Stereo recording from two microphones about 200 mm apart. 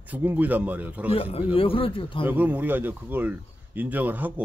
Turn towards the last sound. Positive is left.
turn(degrees=-10)  # may be behind; listen again after turning